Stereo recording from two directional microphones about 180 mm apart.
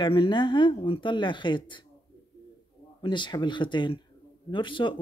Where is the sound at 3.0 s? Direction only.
25° left (ahead or behind).